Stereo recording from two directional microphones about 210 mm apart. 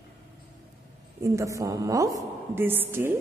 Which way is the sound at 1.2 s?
15° right (ahead or behind).